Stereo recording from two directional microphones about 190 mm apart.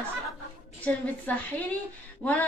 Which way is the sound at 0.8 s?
10° left (ahead or behind).